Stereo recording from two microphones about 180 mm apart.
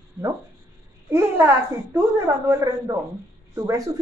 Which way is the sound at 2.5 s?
15° right (ahead or behind).